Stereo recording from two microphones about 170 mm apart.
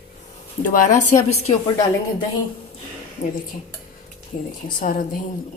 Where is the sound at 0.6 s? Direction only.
50° left (ahead or behind).